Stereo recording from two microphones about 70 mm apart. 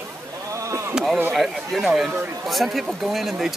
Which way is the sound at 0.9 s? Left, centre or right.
Centre.